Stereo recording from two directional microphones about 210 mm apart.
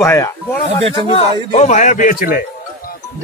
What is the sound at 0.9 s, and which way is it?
A man's voice, 25° left (ahead or behind).